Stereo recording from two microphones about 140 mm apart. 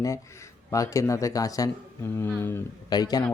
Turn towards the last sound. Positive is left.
turn(degrees=30)  # may be behind; listen again after turning